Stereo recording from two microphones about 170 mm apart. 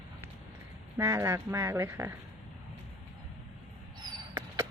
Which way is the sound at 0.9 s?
15° right (ahead or behind).